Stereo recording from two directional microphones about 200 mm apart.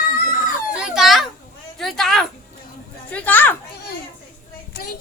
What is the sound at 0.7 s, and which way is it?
Children playing, 5° right (ahead or behind).